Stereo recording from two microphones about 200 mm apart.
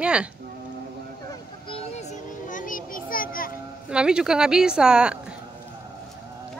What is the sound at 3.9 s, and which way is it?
A woman's voice, 5° right (ahead or behind).